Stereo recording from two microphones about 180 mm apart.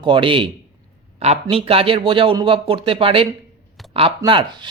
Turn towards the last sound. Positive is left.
turn(degrees=-25)  # may be behind; listen again after turning